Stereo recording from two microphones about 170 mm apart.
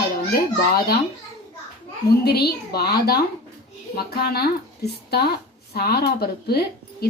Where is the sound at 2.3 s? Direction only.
70° left (ahead or behind).